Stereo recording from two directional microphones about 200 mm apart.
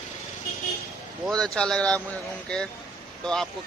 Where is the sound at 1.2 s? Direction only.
5° left (ahead or behind).